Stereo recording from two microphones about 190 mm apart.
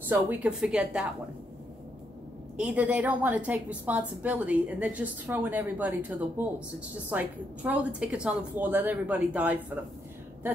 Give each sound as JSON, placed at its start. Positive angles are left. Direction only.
{"t": 0.1, "sound": "a woman's voice", "side_deg": -5}
{"t": 2.5, "sound": "a woman's voice", "side_deg": -5}